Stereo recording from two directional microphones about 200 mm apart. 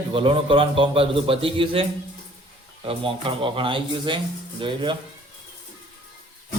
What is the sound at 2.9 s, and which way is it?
A man's voice, 25° right (ahead or behind).